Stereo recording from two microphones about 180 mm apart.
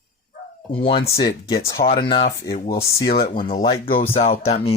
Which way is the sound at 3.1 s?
55° left (ahead or behind).